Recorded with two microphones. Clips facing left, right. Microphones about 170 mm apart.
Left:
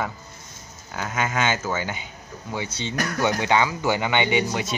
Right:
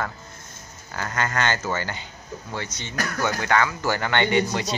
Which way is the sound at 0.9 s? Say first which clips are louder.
Left 1 dB; 5° left (ahead or behind).